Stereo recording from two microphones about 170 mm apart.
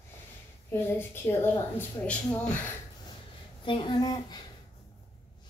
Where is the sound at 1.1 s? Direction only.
15° left (ahead or behind).